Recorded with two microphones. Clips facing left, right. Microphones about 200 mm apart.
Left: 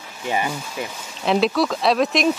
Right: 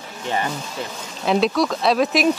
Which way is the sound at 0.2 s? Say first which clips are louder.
Left 1 dB; 10° left (ahead or behind).